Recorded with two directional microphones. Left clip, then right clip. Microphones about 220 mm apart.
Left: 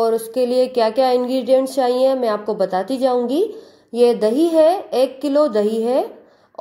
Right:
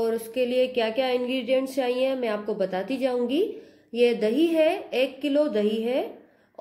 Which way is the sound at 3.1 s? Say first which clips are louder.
Left 7 dB; centre (ahead or behind).